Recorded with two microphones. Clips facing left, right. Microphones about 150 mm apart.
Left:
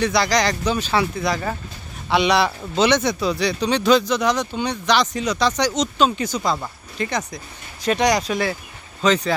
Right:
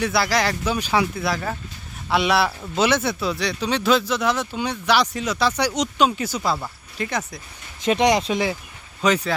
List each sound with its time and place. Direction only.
0.0 s speech: 5° right (ahead or behind)
7.8 s speech: 25° right (ahead or behind); by 9.3 s 10° right (ahead or behind)